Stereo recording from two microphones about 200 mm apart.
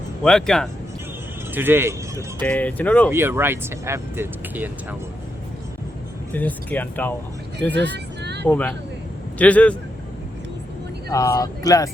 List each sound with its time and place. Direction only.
0.2 s speech: 5° left (ahead or behind)
1.5 s speech: 10° right (ahead or behind)
2.4 s speech: 5° left (ahead or behind)
3.1 s speech: 10° right (ahead or behind)
6.3 s speech: 10° left (ahead or behind)
7.7 s vehicle: 60° right (ahead or behind)
8.4 s speech: 5° left (ahead or behind)
11.1 s speech: 15° left (ahead or behind)